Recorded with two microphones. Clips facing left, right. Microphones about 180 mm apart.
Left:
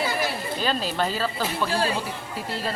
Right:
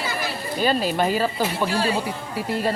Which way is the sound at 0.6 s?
10° right (ahead or behind).